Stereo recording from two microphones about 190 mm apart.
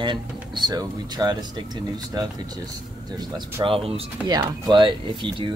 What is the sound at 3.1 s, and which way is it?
Speech, 20° right (ahead or behind).